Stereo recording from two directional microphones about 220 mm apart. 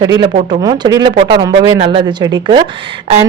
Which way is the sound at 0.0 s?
20° right (ahead or behind).